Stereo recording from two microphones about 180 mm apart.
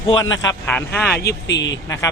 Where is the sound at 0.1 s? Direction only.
20° left (ahead or behind).